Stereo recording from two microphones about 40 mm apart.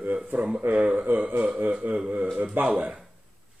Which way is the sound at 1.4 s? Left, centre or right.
Right.